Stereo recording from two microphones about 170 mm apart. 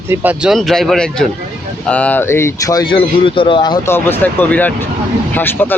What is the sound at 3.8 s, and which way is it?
Speech, 15° left (ahead or behind).